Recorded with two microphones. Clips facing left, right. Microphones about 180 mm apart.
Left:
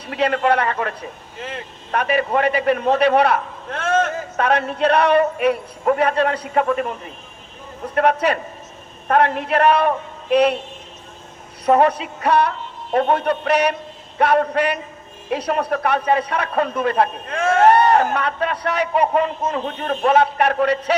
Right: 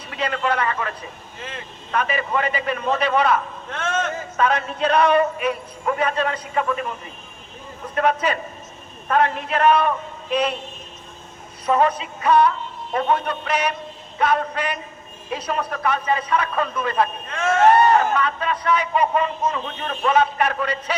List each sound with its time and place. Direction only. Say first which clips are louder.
0.1 s a man's voice: left 6 dB; 60° left (ahead or behind)
3.7 s a man's voice: left 6 dB; 40° left (ahead or behind)
4.4 s a man's voice: left 2 dB; 65° left (ahead or behind)
7.9 s a man's voice: left 3 dB; 65° left (ahead or behind)
11.6 s a man's voice: left 4 dB; 65° left (ahead or behind); by 20.1 s 45° left (ahead or behind)
20.1 s a man's voice: left 2 dB; 65° left (ahead or behind)